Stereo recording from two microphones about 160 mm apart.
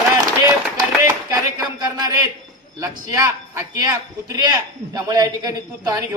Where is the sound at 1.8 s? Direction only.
25° right (ahead or behind).